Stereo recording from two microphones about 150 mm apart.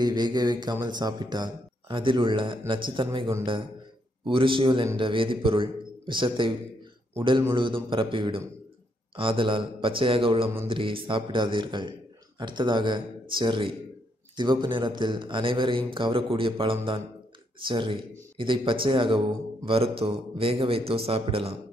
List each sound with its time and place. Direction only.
0.0 s a man's voice: 30° right (ahead or behind)
7.5 s a man's voice: 35° right (ahead or behind)